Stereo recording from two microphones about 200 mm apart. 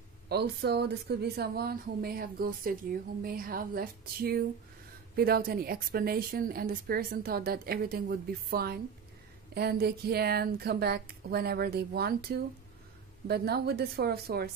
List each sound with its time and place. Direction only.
0.3 s a woman's voice: 55° right (ahead or behind)